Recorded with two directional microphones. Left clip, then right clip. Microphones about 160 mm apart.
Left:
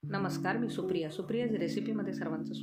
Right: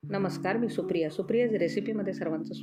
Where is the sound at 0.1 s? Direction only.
15° right (ahead or behind).